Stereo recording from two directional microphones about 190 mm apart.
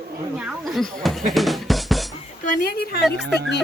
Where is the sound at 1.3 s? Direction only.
Centre (ahead or behind).